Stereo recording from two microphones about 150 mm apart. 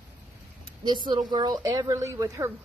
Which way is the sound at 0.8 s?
30° right (ahead or behind).